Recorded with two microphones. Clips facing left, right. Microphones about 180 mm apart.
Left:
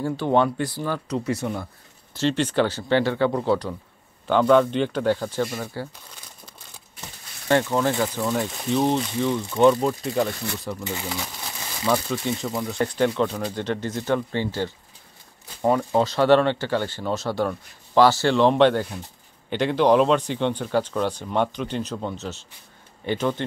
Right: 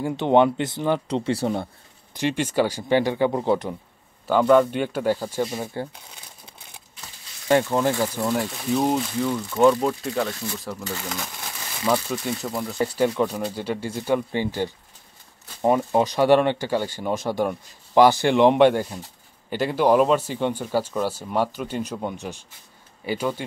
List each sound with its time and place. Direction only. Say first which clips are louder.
0.0 s speech: right 3 dB; 20° right (ahead or behind)
2.1 s speech: left 1 dB; 10° right (ahead or behind)
4.3 s speech: even; 5° right (ahead or behind)
7.4 s speech: right 1 dB; 15° right (ahead or behind)